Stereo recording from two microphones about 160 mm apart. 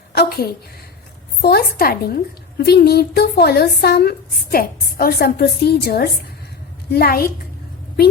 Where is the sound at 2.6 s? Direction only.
90° left.